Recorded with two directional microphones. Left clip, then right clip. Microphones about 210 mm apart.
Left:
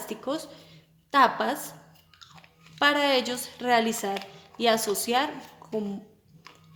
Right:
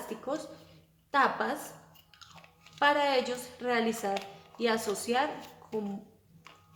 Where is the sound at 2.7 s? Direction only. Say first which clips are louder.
Left 3 dB; 35° left (ahead or behind).